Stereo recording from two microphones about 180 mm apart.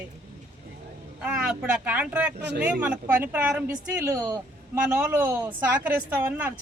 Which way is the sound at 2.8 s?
10° right (ahead or behind).